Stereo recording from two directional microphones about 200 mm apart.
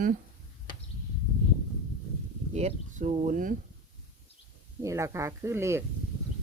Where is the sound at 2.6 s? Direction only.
35° right (ahead or behind).